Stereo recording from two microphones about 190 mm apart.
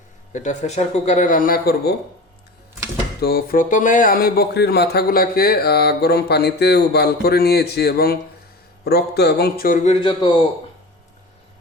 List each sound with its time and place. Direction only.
0.3 s speech: 40° left (ahead or behind); by 2.0 s 55° left (ahead or behind)
3.2 s speech: 55° left (ahead or behind); by 10.3 s 25° left (ahead or behind)